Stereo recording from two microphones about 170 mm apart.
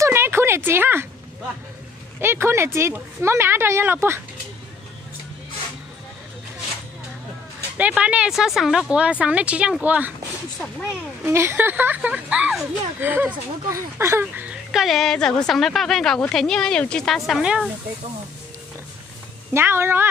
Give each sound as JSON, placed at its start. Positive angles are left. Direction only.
{"t": 0.0, "sound": "a sound", "side_deg": -15}
{"t": 2.1, "sound": "speech", "side_deg": -15}
{"t": 7.7, "sound": "speech", "side_deg": -10}
{"t": 19.5, "sound": "speech", "side_deg": -15}